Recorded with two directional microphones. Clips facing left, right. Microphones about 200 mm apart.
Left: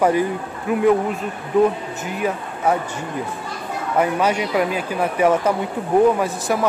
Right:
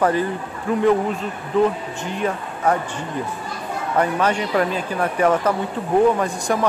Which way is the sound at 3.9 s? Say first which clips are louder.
Left 1 dB; 10° left (ahead or behind).